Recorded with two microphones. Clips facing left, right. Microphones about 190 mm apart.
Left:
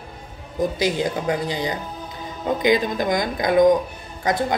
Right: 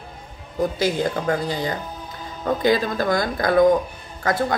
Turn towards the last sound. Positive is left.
turn(degrees=20)  # may be behind; listen again after turning